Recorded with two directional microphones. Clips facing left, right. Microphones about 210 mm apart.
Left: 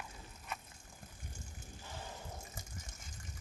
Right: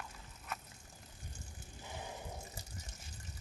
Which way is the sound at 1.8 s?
15° right (ahead or behind).